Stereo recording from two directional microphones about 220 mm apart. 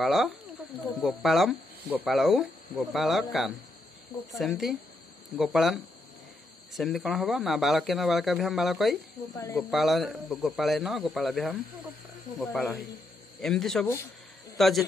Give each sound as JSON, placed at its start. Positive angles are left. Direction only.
{"t": 0.0, "sound": "speech", "side_deg": 0}
{"t": 9.3, "sound": "speech", "side_deg": 15}
{"t": 9.6, "sound": "speech", "side_deg": 0}